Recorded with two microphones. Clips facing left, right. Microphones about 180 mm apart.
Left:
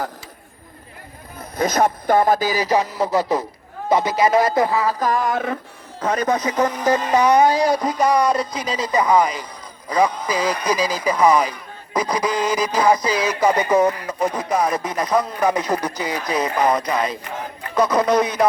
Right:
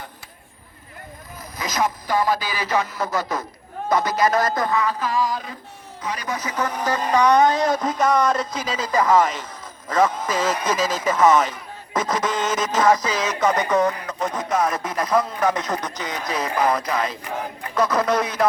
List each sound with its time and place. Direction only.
1.5 s speech: 50° left (ahead or behind); by 3.4 s 30° left (ahead or behind)
3.8 s a sound: 25° left (ahead or behind); by 5.5 s 65° left (ahead or behind)
6.0 s speech: 50° left (ahead or behind)
6.7 s speech: 5° left (ahead or behind)
13.7 s speech: 20° left (ahead or behind)
14.2 s speech: centre (ahead or behind)